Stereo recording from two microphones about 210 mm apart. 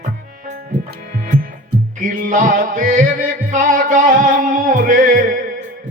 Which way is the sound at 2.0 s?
40° right (ahead or behind).